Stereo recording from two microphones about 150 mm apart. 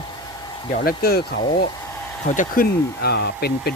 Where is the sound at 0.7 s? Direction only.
85° left.